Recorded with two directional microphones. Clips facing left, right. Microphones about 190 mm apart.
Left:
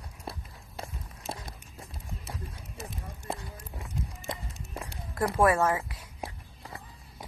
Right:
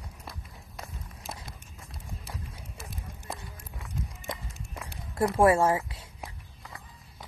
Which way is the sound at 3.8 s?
30° left (ahead or behind).